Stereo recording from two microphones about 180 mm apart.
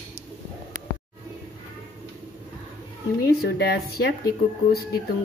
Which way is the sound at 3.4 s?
60° left (ahead or behind).